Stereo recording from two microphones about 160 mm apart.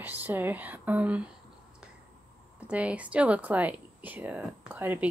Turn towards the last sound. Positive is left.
turn(degrees=-10)  # may be behind; listen again after turning